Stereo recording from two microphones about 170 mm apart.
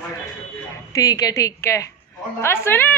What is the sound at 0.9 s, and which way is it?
A man's voice, 20° left (ahead or behind).